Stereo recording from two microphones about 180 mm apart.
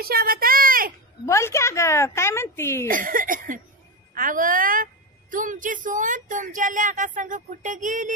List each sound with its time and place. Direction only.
0.0 s a sound: 55° right (ahead or behind)
1.2 s a woman's voice: 15° left (ahead or behind)
2.9 s speech: 50° right (ahead or behind)